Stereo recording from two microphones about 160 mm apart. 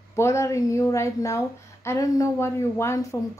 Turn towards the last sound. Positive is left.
turn(degrees=20)  # may be behind; listen again after turning